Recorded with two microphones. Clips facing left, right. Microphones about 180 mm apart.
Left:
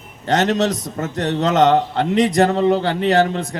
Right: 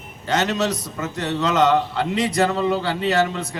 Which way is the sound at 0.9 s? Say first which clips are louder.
Left 4 dB; 40° left (ahead or behind).